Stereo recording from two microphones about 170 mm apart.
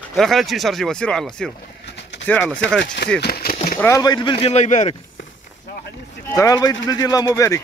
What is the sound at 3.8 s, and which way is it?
Speech, 20° left (ahead or behind).